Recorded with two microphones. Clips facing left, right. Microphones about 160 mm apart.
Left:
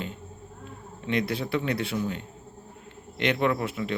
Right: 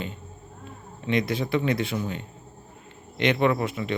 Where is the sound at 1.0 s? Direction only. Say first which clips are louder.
Right 2 dB; centre (ahead or behind).